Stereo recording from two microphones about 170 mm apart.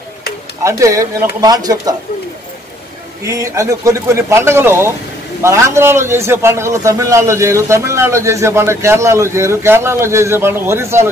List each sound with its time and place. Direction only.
0.7 s speech: 20° right (ahead or behind)
3.3 s a man's voice: 20° right (ahead or behind)